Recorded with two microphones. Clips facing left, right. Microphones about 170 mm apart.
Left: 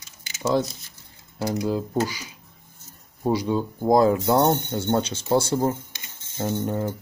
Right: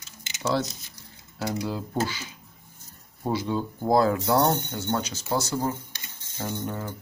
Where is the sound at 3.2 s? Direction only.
15° left (ahead or behind).